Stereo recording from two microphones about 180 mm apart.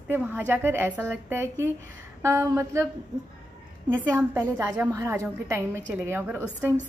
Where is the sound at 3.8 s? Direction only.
10° right (ahead or behind).